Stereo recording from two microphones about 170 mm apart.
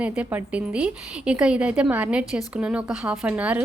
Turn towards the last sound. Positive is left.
turn(degrees=-10)  # may be behind; listen again after turning